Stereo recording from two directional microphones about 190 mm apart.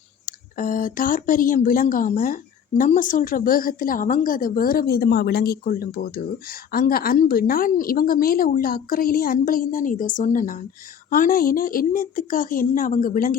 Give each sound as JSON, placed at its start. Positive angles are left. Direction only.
{"t": 0.3, "sound": "speech", "side_deg": 45}